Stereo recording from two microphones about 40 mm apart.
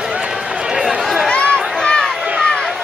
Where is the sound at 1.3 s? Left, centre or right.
Left.